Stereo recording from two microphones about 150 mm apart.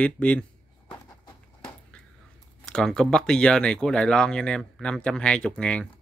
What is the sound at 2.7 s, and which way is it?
Speech, 5° left (ahead or behind).